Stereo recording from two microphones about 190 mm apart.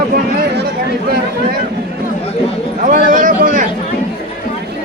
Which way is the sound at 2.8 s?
45° right (ahead or behind).